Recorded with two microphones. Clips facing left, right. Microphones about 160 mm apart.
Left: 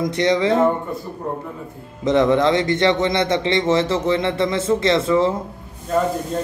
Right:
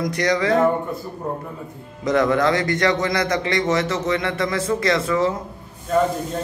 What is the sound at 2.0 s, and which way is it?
A man's voice, 25° left (ahead or behind).